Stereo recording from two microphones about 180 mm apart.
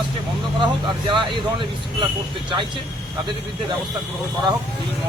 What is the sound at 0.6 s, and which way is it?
Speech, 25° right (ahead or behind).